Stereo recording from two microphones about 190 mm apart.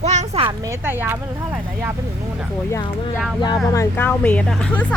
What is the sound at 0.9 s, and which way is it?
Speech, 10° right (ahead or behind).